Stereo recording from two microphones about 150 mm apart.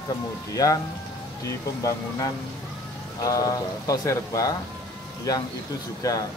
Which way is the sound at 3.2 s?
25° left (ahead or behind).